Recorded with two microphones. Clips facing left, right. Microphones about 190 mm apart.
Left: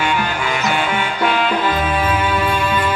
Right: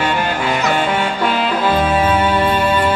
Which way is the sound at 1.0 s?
35° right (ahead or behind).